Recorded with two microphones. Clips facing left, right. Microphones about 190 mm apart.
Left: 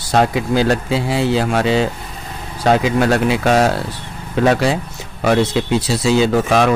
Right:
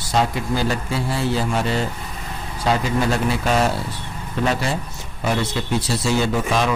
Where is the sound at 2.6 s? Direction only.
75° left (ahead or behind).